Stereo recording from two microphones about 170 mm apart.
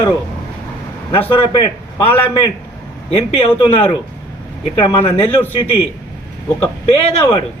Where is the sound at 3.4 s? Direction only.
30° left (ahead or behind).